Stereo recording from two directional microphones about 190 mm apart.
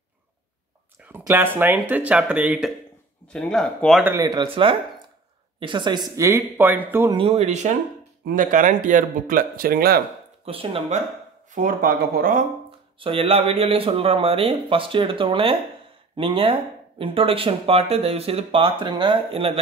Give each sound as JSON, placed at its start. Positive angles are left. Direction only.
{"t": 1.0, "sound": "speech", "side_deg": -10}
{"t": 4.0, "sound": "speech", "side_deg": -15}
{"t": 7.2, "sound": "speech", "side_deg": -35}
{"t": 10.4, "sound": "speech", "side_deg": -30}
{"t": 11.5, "sound": "speech", "side_deg": -45}
{"t": 13.0, "sound": "speech", "side_deg": -30}